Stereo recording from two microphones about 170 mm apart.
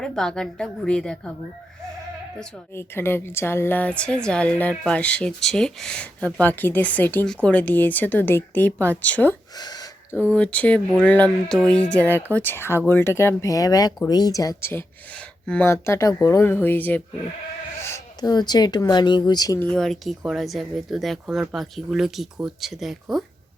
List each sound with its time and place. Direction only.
0.0 s speech: 5° left (ahead or behind)
2.7 s speech: 15° left (ahead or behind)
9.6 s a sound: 25° left (ahead or behind)
10.3 s speech: 5° left (ahead or behind); by 19.5 s 25° left (ahead or behind)
19.5 s speech: 5° left (ahead or behind)